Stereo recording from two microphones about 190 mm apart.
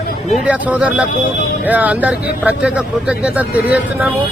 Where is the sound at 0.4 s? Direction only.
5° right (ahead or behind).